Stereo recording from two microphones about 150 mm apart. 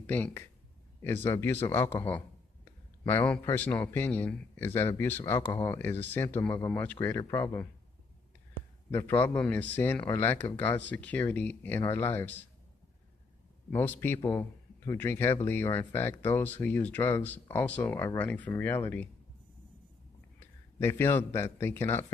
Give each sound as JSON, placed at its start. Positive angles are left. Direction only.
{"t": 0.0, "sound": "speech", "side_deg": 10}
{"t": 8.9, "sound": "speech", "side_deg": 15}
{"t": 13.7, "sound": "speech", "side_deg": 15}
{"t": 20.3, "sound": "a sound", "side_deg": 15}
{"t": 21.5, "sound": "speech", "side_deg": 15}